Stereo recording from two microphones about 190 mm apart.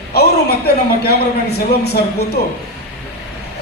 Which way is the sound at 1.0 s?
55° left (ahead or behind).